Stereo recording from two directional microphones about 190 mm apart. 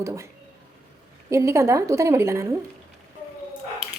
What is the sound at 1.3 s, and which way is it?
A woman's voice, 15° right (ahead or behind).